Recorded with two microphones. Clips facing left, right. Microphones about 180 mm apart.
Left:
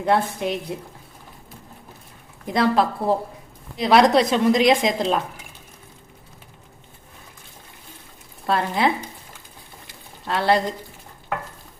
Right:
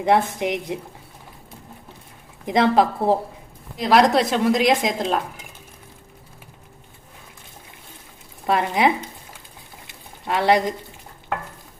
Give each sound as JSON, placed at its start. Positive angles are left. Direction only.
{"t": 0.0, "sound": "a woman's voice", "side_deg": -15}
{"t": 2.5, "sound": "a woman's voice", "side_deg": -20}
{"t": 3.8, "sound": "speech", "side_deg": 0}
{"t": 8.4, "sound": "a woman's voice", "side_deg": -15}
{"t": 10.2, "sound": "a woman's voice", "side_deg": -15}